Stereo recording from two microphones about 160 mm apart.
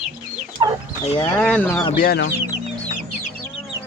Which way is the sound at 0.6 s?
25° right (ahead or behind).